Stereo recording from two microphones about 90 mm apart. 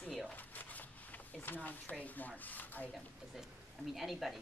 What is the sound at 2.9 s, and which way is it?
Speech, 5° right (ahead or behind).